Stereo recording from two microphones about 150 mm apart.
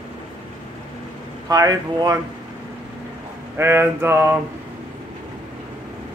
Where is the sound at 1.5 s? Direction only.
25° right (ahead or behind).